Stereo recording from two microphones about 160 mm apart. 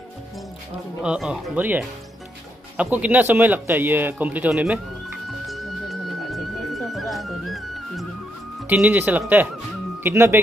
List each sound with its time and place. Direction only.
1.0 s speech: 5° right (ahead or behind)
5.5 s music: centre (ahead or behind)
8.6 s speech: 10° right (ahead or behind)